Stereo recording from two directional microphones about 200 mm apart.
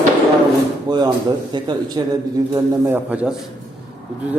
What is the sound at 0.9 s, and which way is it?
A man's voice, 20° right (ahead or behind).